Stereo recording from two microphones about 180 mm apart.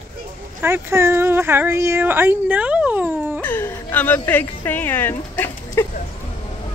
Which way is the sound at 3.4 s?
10° left (ahead or behind).